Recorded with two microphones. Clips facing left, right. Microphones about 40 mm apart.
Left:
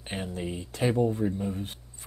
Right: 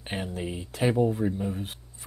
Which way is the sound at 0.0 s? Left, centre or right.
Centre.